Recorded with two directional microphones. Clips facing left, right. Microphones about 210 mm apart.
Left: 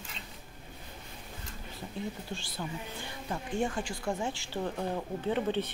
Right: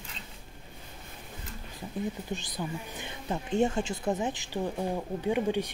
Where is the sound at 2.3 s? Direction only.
20° right (ahead or behind).